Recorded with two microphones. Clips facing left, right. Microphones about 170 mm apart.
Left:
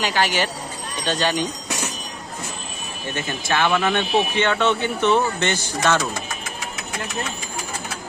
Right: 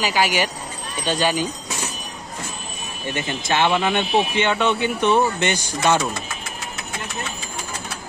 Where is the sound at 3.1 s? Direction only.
20° right (ahead or behind).